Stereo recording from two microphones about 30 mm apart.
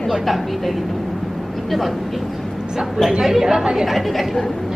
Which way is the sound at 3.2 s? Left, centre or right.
Centre.